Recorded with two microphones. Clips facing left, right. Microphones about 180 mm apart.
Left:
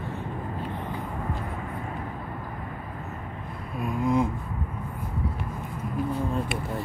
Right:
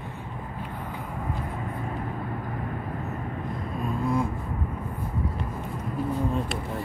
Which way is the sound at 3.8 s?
15° left (ahead or behind).